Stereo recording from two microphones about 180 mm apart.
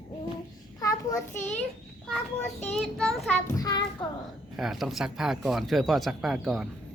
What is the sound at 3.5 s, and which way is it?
Speech, 20° left (ahead or behind).